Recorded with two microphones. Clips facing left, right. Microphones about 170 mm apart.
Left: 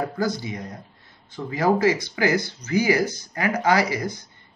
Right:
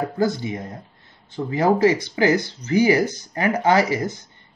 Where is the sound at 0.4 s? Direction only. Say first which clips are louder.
Right 4 dB; 25° right (ahead or behind).